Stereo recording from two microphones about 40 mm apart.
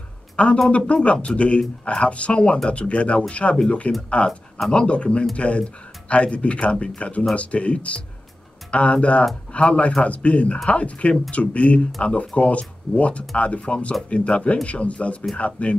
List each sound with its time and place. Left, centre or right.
0.7 s speech: left